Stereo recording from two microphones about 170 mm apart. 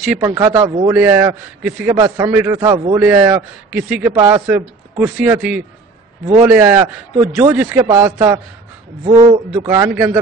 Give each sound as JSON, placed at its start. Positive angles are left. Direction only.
{"t": 0.2, "sound": "a man's voice", "side_deg": -15}
{"t": 0.5, "sound": "speech", "side_deg": -25}
{"t": 0.9, "sound": "a man's voice", "side_deg": -10}
{"t": 9.0, "sound": "a man's voice", "side_deg": -30}
{"t": 9.6, "sound": "a man's voice", "side_deg": -15}